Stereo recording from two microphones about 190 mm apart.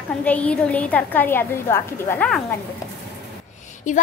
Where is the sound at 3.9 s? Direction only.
40° left (ahead or behind).